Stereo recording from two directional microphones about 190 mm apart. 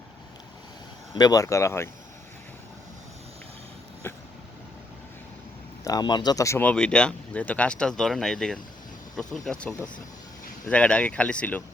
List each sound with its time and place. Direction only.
1.1 s speech: 20° left (ahead or behind)
4.0 s vehicle: 10° left (ahead or behind)
5.8 s speech: 20° left (ahead or behind)